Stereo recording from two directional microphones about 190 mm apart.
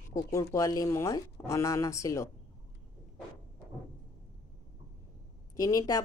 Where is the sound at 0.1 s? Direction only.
15° left (ahead or behind).